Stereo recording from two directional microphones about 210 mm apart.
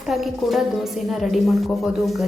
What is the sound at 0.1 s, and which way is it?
A woman's voice, centre (ahead or behind).